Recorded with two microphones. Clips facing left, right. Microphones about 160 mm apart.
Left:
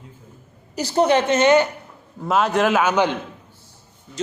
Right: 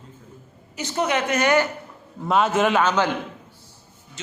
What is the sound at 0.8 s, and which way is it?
Speech, 35° left (ahead or behind).